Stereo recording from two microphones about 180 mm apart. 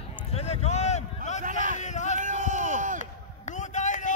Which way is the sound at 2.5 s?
40° left (ahead or behind).